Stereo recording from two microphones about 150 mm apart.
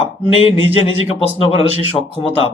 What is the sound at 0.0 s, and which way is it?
Speech, 40° left (ahead or behind).